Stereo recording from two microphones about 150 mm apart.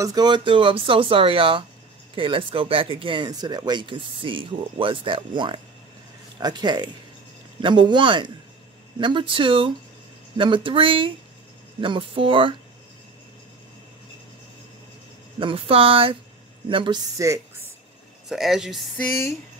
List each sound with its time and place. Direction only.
0.0 s speech: 25° right (ahead or behind)
15.3 s speech: 35° right (ahead or behind); by 17.6 s 20° right (ahead or behind)
18.3 s speech: centre (ahead or behind)
18.9 s a sound: 20° left (ahead or behind)